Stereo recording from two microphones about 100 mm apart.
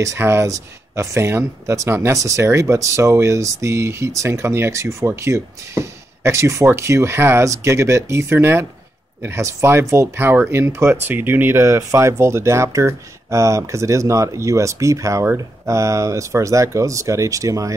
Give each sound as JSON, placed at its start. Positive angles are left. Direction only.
{"t": 0.0, "sound": "speech", "side_deg": -30}